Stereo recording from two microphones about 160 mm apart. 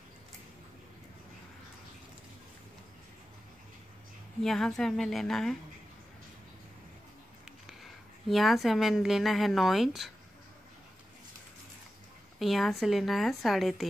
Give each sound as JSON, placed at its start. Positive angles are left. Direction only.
{"t": 4.4, "sound": "speech", "side_deg": 5}
{"t": 8.3, "sound": "speech", "side_deg": 0}
{"t": 12.4, "sound": "speech", "side_deg": 0}